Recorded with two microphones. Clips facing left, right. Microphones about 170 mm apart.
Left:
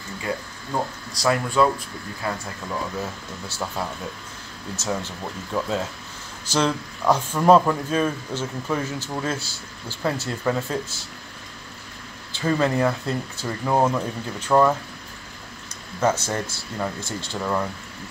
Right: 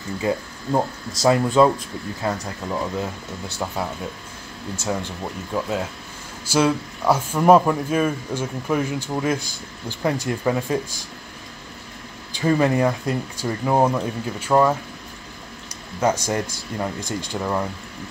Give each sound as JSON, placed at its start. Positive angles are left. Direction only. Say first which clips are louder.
{"t": 0.3, "sound": "speech", "louder": "right 5 dB", "side_deg": -25}
{"t": 12.3, "sound": "speech", "louder": "right 3 dB", "side_deg": -15}
{"t": 16.0, "sound": "speech", "louder": "right 2 dB", "side_deg": -10}